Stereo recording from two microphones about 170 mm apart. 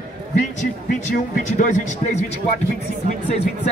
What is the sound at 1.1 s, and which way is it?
Speech, 50° left (ahead or behind).